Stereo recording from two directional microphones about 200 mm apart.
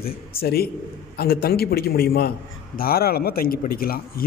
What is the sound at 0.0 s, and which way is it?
A man's voice, 50° left (ahead or behind).